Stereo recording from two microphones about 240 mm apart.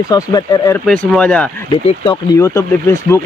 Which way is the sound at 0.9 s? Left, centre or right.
Centre.